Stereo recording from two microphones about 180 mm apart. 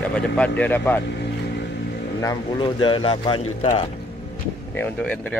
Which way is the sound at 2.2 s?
20° left (ahead or behind).